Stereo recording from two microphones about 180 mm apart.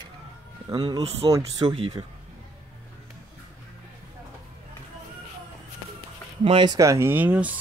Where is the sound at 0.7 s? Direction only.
25° right (ahead or behind).